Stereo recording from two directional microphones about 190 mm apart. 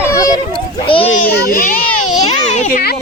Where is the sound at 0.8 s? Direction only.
30° left (ahead or behind).